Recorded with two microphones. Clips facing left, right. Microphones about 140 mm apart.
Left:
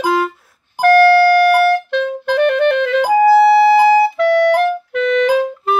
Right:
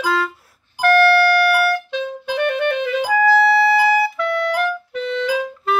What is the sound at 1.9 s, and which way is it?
Music, 60° left (ahead or behind).